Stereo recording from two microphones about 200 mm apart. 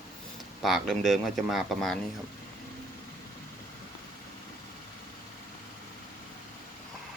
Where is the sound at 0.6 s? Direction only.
Centre (ahead or behind).